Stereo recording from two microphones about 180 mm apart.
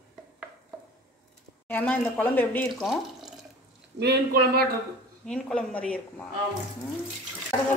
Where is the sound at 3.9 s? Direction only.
65° right (ahead or behind).